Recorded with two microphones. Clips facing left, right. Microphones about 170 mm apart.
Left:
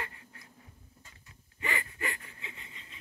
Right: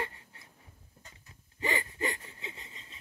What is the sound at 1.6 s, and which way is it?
Gasp, 30° right (ahead or behind).